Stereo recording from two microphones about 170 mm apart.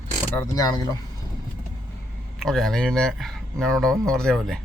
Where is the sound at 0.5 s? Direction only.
20° left (ahead or behind).